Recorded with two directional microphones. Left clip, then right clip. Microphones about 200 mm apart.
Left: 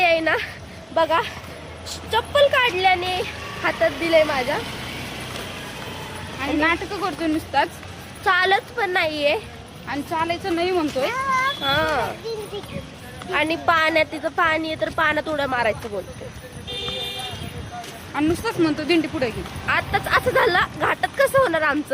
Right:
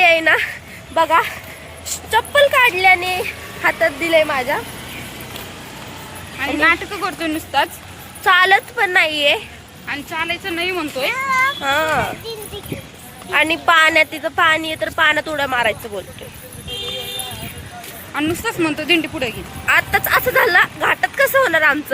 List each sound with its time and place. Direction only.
0.0 s a sound: 10° right (ahead or behind)
0.9 s speech: 20° right (ahead or behind)
6.6 s speech: 10° left (ahead or behind)
8.2 s speech: 15° right (ahead or behind)
9.9 s speech: 20° left (ahead or behind)
11.6 s speech: 20° right (ahead or behind)
13.3 s a woman's voice: 15° right (ahead or behind)
18.1 s a woman's voice: centre (ahead or behind)
19.6 s speech: 15° right (ahead or behind)